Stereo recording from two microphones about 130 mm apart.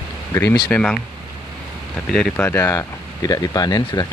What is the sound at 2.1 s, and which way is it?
Speech, 10° left (ahead or behind).